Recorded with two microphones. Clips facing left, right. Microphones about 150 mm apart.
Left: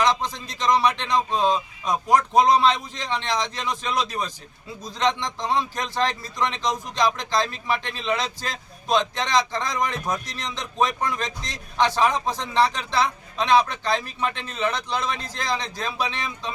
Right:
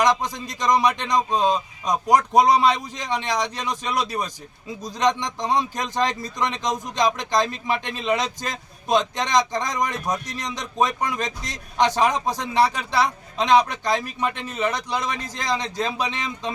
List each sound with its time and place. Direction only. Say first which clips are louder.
0.0 s speech: right 2 dB; 15° right (ahead or behind)